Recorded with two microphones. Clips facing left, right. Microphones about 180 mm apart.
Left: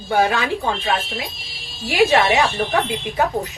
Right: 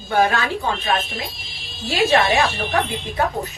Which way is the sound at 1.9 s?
15° left (ahead or behind).